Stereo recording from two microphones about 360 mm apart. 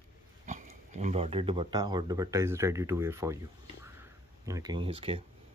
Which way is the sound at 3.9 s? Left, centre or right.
Centre.